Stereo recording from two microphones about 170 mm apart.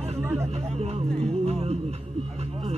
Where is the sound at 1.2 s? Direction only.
35° right (ahead or behind).